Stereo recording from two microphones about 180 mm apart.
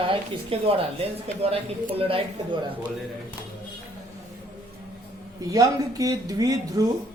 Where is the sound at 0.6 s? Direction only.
30° right (ahead or behind).